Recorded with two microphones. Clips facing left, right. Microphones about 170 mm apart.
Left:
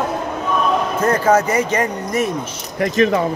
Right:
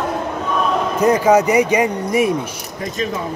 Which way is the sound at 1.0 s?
15° right (ahead or behind).